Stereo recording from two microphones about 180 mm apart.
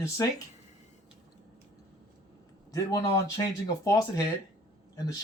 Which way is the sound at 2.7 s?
20° left (ahead or behind).